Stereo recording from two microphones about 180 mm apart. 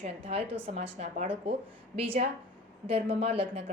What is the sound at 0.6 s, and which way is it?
Speech, 35° right (ahead or behind).